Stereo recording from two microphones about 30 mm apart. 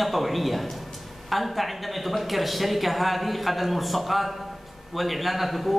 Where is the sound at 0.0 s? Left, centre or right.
Centre.